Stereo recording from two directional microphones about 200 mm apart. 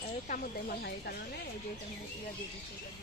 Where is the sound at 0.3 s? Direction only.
50° left (ahead or behind).